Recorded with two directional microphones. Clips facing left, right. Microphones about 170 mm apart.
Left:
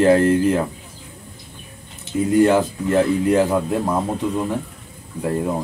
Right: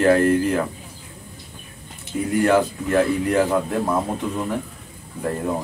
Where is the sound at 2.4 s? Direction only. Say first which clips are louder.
Left 1 dB; 20° left (ahead or behind).